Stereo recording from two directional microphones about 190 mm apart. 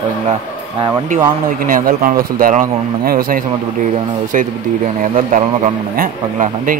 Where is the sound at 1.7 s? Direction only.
50° right (ahead or behind).